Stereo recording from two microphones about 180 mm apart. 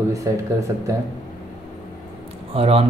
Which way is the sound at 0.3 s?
15° right (ahead or behind).